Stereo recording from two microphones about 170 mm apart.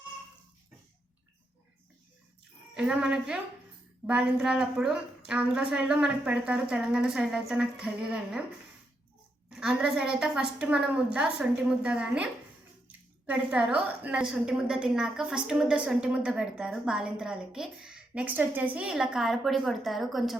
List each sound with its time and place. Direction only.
2.7 s a woman's voice: 5° right (ahead or behind)
9.5 s a woman's voice: 5° right (ahead or behind)